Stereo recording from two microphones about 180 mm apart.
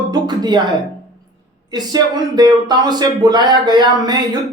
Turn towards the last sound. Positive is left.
turn(degrees=-25)  # may be behind; listen again after turning